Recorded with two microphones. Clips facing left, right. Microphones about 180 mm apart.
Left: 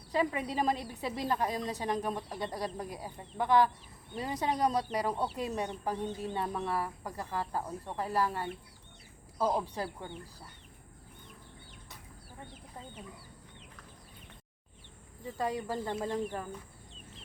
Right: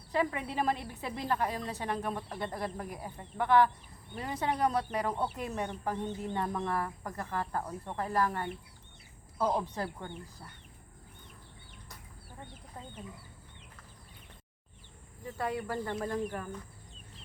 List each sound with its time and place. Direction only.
0.1 s speech: 15° left (ahead or behind)
6.1 s a woman's voice: 20° right (ahead or behind)
6.3 s speech: 15° left (ahead or behind)
15.4 s speech: 15° left (ahead or behind)